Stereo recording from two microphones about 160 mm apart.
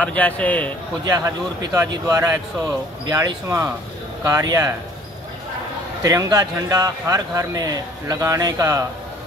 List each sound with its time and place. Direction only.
0.0 s a man's voice: 10° left (ahead or behind)
1.1 s speech: 20° right (ahead or behind)
6.0 s speech: 25° right (ahead or behind)